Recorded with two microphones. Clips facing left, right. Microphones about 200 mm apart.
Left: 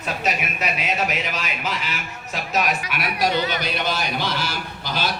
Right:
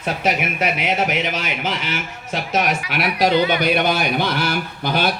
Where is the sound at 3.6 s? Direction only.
55° right (ahead or behind).